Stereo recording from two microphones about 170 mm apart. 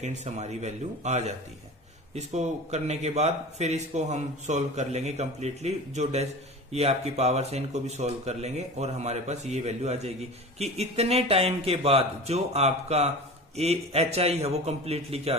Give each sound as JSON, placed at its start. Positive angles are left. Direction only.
{"t": 0.0, "sound": "a man's voice", "side_deg": -40}